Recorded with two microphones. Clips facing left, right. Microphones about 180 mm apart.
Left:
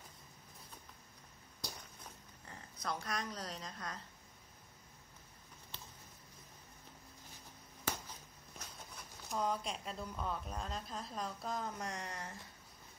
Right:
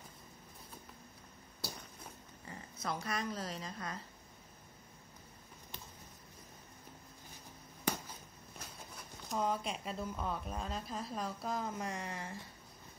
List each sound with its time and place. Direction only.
2.4 s speech: centre (ahead or behind)
8.5 s speech: 5° right (ahead or behind)